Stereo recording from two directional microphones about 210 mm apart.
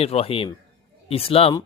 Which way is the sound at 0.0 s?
30° left (ahead or behind).